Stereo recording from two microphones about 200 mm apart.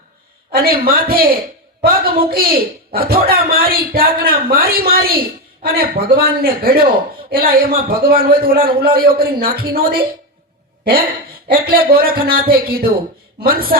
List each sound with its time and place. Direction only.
0.5 s a man's voice: 50° right (ahead or behind)
11.4 s a man's voice: 50° right (ahead or behind)